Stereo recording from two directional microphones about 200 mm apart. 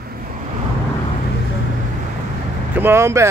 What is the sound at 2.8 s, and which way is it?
Speech, 15° right (ahead or behind).